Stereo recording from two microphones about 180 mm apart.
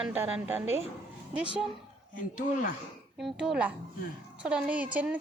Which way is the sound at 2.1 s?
50° left (ahead or behind).